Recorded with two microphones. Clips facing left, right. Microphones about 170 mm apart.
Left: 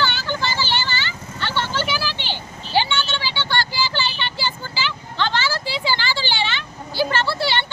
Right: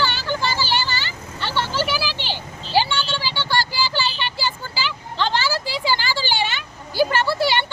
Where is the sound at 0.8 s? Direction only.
35° right (ahead or behind).